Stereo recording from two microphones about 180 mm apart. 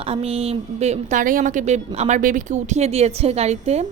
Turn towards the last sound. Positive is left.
turn(degrees=-35)  # may be behind; listen again after turning